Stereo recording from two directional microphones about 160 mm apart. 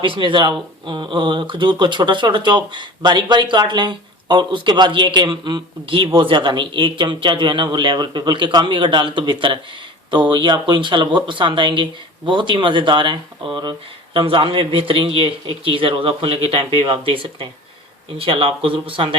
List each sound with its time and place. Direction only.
0.0 s speech: 30° right (ahead or behind)